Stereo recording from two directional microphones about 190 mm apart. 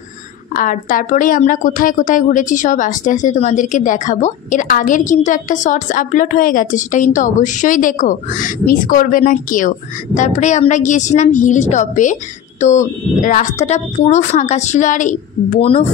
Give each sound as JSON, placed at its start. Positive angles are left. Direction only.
{"t": 0.6, "sound": "a woman's voice", "side_deg": 45}